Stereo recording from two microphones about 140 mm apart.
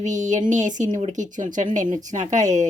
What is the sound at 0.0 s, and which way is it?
A woman's voice, 60° right (ahead or behind).